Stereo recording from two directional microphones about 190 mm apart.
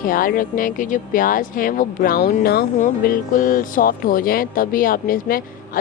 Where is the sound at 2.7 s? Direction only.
45° left (ahead or behind).